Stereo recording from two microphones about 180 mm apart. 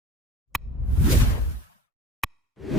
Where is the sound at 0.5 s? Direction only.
Centre (ahead or behind).